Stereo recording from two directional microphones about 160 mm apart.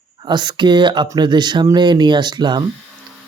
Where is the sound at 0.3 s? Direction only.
30° right (ahead or behind).